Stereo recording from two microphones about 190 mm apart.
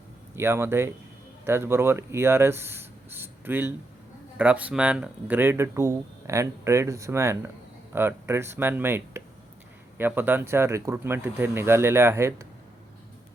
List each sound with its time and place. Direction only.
0.3 s speech: 15° right (ahead or behind)